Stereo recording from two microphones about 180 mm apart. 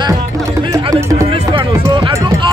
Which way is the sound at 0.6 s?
20° right (ahead or behind).